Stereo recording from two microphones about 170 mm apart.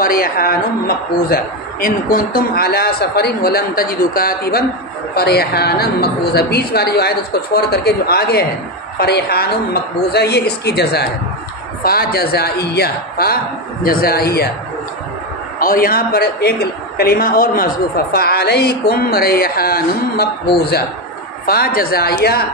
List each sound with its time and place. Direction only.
0.0 s a man's voice: 60° left (ahead or behind); by 11.1 s 75° left (ahead or behind)
11.8 s a man's voice: 60° left (ahead or behind)
15.6 s a man's voice: 60° left (ahead or behind)
21.5 s a man's voice: 60° left (ahead or behind)